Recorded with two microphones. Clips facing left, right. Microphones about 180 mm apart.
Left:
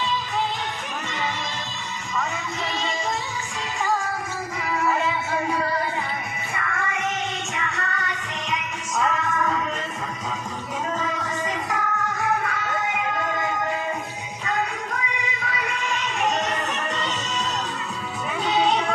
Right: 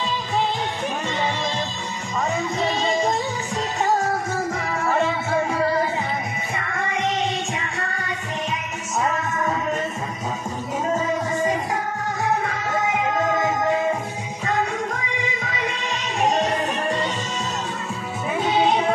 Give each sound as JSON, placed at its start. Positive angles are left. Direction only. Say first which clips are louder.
{"t": 2.1, "sound": "music", "louder": "right 5 dB", "side_deg": -35}
{"t": 6.5, "sound": "music", "louder": "right 1 dB", "side_deg": -35}
{"t": 9.0, "sound": "music", "louder": "even", "side_deg": -25}
{"t": 10.9, "sound": "music", "louder": "right 7 dB", "side_deg": -25}
{"t": 15.4, "sound": "music", "louder": "right 1 dB", "side_deg": -35}